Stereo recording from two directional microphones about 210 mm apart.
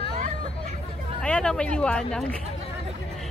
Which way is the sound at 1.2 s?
5° left (ahead or behind).